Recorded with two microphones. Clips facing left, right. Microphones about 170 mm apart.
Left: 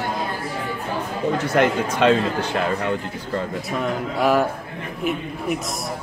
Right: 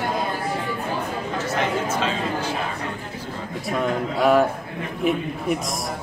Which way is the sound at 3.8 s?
Centre (ahead or behind).